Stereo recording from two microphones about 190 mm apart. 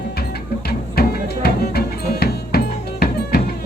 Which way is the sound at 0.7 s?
55° left (ahead or behind).